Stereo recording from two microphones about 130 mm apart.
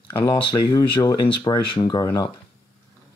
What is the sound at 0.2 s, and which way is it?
Speech, 35° left (ahead or behind).